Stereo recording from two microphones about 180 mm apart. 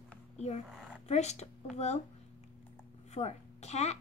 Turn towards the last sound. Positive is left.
turn(degrees=35)  # may be behind; listen again after turning